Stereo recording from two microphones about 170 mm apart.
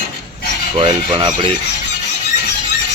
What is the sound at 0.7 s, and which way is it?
Filing, 30° right (ahead or behind).